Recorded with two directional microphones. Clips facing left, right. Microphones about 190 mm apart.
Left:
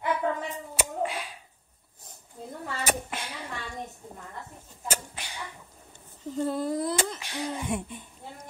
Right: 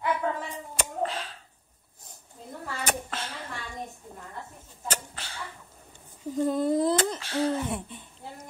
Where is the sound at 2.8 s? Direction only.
15° left (ahead or behind).